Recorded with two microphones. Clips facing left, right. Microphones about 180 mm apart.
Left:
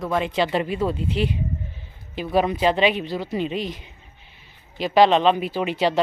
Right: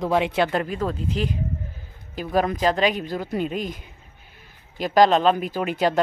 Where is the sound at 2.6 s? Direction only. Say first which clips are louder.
Left 1 dB; 40° right (ahead or behind).